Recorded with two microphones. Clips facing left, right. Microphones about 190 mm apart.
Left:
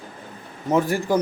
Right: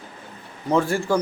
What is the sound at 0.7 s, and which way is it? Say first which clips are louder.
Speech: even; 15° left (ahead or behind).